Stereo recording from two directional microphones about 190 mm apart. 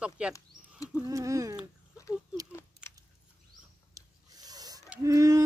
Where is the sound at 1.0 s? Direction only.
15° right (ahead or behind).